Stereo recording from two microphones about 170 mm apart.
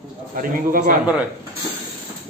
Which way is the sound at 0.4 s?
55° right (ahead or behind).